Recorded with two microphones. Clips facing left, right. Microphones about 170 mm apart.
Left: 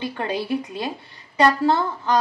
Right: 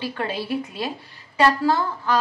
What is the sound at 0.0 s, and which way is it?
A woman's voice, 20° left (ahead or behind).